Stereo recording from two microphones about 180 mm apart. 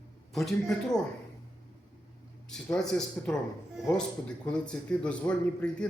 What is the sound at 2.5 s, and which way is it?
Speech, 5° left (ahead or behind).